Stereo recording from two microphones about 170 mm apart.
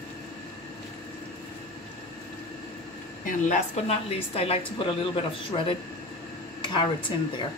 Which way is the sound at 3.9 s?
35° left (ahead or behind).